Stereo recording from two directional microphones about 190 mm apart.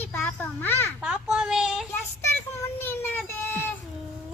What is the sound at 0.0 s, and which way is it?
Children playing, 10° left (ahead or behind).